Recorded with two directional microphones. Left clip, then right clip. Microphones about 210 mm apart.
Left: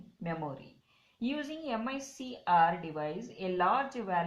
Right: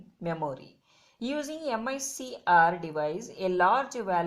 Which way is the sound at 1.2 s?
35° right (ahead or behind).